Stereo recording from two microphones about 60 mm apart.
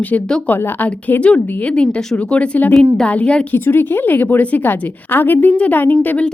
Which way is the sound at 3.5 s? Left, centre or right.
Left.